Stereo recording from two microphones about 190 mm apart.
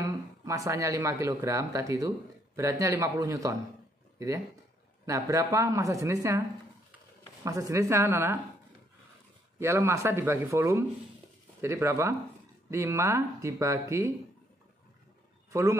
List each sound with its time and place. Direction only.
0.0 s speech: 15° right (ahead or behind)
5.0 s a woman's voice: 15° right (ahead or behind)
7.4 s a woman's voice: 15° right (ahead or behind)
9.6 s a woman's voice: 15° right (ahead or behind)